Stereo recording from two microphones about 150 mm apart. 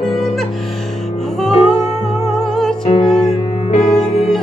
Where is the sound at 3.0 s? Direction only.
45° left (ahead or behind).